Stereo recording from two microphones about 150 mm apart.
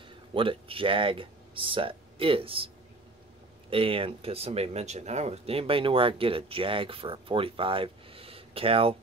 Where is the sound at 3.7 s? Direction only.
40° right (ahead or behind).